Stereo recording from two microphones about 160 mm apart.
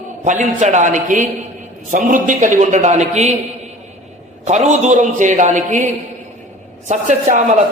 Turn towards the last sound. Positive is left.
turn(degrees=-50)  # may be behind; listen again after turning